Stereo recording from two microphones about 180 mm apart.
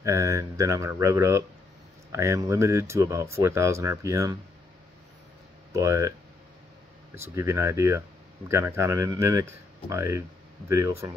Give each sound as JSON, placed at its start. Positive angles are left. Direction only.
{"t": 0.0, "sound": "speech", "side_deg": -15}
{"t": 5.7, "sound": "speech", "side_deg": -15}
{"t": 7.2, "sound": "speech", "side_deg": -15}